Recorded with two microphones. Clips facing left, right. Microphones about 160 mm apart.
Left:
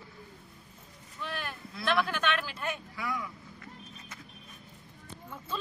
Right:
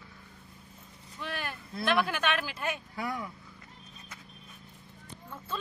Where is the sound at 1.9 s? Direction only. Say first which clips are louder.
Right 1 dB; 5° right (ahead or behind).